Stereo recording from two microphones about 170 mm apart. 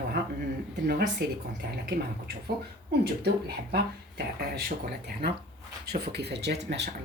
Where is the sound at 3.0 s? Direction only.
70° right (ahead or behind).